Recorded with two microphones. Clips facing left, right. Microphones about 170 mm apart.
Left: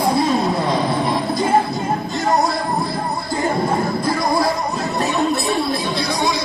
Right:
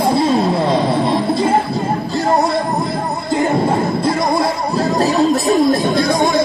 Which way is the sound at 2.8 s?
20° right (ahead or behind).